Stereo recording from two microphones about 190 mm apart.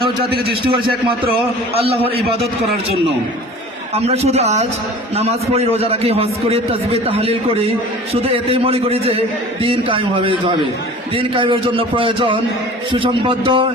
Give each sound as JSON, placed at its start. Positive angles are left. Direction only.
{"t": 1.7, "sound": "a man's voice", "side_deg": -30}
{"t": 3.9, "sound": "a man's voice", "side_deg": -35}